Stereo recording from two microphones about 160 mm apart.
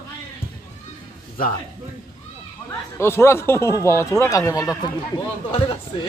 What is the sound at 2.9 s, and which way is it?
Speech, 15° left (ahead or behind).